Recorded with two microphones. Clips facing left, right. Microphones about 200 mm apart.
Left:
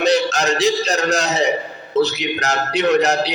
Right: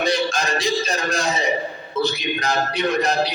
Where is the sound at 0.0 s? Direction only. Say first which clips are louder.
Left 5 dB; 75° left (ahead or behind).